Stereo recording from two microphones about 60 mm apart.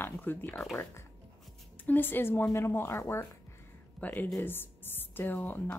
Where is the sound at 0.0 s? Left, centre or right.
Left.